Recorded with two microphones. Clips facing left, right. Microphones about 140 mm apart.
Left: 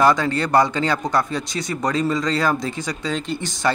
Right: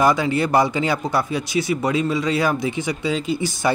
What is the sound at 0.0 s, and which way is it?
A man's voice, 10° right (ahead or behind).